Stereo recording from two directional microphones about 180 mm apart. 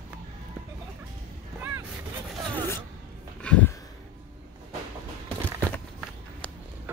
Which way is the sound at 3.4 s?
5° left (ahead or behind).